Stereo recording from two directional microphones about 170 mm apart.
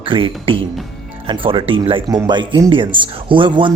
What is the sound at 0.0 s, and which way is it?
Speech, 30° right (ahead or behind).